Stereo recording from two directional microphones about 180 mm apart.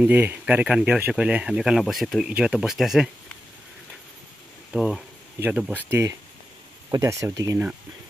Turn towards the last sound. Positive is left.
turn(degrees=-15)  # may be behind; listen again after turning